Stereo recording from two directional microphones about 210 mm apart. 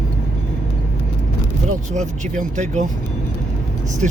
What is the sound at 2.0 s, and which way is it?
Speech, 35° right (ahead or behind).